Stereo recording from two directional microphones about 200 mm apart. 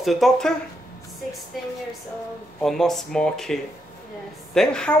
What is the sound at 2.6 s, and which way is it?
A child's voice, centre (ahead or behind).